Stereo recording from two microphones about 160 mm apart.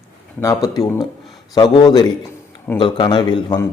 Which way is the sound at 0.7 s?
20° left (ahead or behind).